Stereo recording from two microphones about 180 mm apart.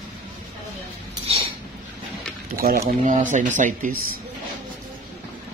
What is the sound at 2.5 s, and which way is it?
Speech, 55° right (ahead or behind).